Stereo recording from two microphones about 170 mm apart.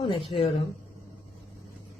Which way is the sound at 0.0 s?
30° left (ahead or behind).